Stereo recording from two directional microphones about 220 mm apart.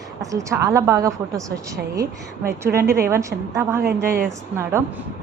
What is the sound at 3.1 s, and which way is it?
Speech, 15° right (ahead or behind).